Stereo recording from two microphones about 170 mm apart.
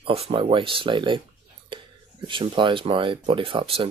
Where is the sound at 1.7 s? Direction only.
30° right (ahead or behind).